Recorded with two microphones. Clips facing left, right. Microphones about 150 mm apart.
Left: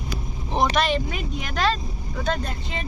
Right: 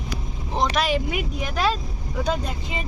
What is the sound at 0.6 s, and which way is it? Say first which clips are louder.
Speech: even; 5° right (ahead or behind).